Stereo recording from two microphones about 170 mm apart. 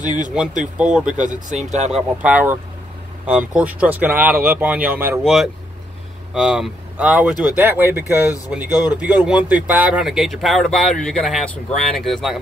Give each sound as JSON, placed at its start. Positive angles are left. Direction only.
{"t": 0.7, "sound": "speech", "side_deg": -5}
{"t": 1.5, "sound": "speech", "side_deg": -40}
{"t": 1.9, "sound": "speech", "side_deg": -5}
{"t": 5.2, "sound": "speech", "side_deg": 0}